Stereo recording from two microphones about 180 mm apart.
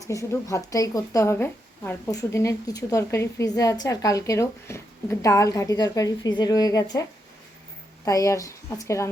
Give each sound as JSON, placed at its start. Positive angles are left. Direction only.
{"t": 0.1, "sound": "a woman's voice", "side_deg": 20}